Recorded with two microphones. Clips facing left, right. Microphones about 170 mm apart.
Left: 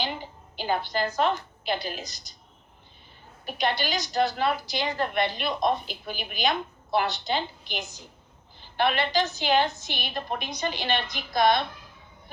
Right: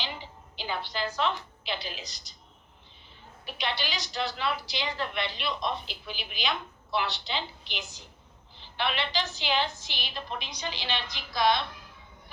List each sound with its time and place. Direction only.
0.0 s a woman's voice: 50° left (ahead or behind)
3.4 s a woman's voice: 45° left (ahead or behind)